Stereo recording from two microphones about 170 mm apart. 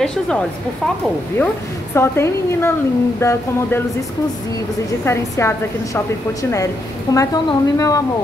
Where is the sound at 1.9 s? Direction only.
15° left (ahead or behind).